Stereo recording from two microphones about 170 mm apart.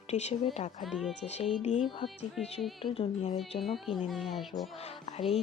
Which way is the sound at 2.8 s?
40° left (ahead or behind).